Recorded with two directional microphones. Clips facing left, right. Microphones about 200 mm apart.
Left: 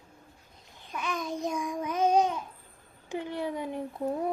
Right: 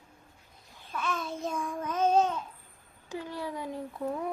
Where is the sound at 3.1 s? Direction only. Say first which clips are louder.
Left 4 dB; 20° left (ahead or behind).